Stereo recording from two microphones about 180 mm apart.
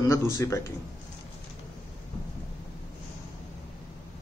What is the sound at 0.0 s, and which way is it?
Speech, 15° left (ahead or behind).